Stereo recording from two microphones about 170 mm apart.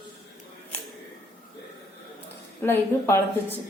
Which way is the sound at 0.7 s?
10° left (ahead or behind).